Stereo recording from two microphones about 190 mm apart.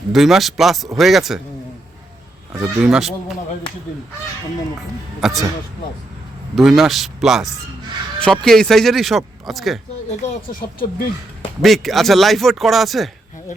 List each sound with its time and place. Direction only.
0.1 s speech: centre (ahead or behind)
2.5 s speech: 5° right (ahead or behind)
5.2 s speech: centre (ahead or behind)
6.6 s speech: centre (ahead or behind)
10.2 s speech: 50° left (ahead or behind)
11.6 s speech: centre (ahead or behind)